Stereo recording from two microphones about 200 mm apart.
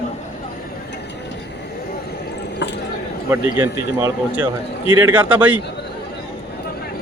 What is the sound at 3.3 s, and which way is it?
Speech, 10° right (ahead or behind).